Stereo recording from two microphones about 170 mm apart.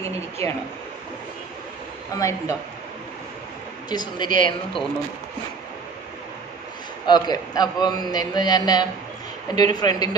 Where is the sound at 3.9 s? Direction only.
25° left (ahead or behind).